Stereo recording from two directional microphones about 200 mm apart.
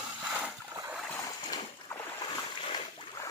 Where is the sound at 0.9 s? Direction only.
Centre (ahead or behind).